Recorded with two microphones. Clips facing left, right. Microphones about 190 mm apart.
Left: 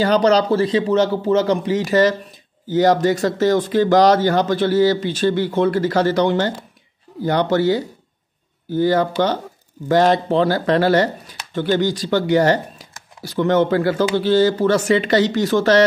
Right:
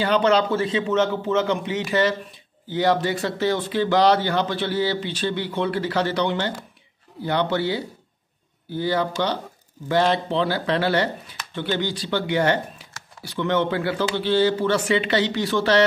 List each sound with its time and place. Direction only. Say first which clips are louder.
0.0 s a man's voice: left 4 dB; 40° left (ahead or behind)